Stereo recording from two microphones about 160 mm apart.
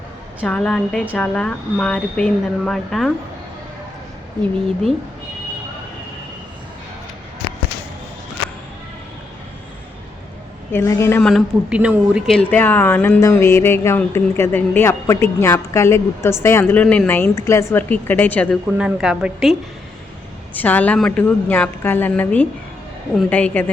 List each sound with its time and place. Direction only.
0.4 s a woman's voice: 5° left (ahead or behind)
10.7 s speech: 15° left (ahead or behind)
11.2 s speech: centre (ahead or behind)
18.8 s a woman's voice: 5° right (ahead or behind)
20.5 s speech: 10° left (ahead or behind)